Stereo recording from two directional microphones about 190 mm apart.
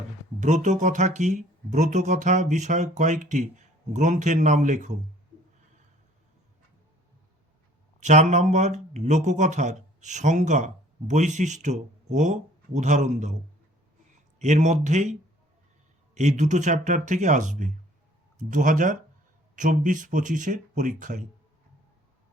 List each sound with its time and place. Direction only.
0.3 s speech: 40° right (ahead or behind)
8.0 s speech: 40° right (ahead or behind)
14.3 s speech: 40° right (ahead or behind)
16.1 s speech: 40° right (ahead or behind)